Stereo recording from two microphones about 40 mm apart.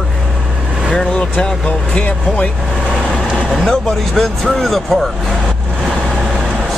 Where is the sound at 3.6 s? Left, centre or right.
Centre.